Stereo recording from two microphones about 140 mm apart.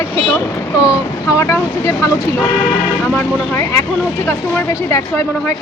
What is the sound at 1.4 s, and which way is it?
Speech, 20° left (ahead or behind).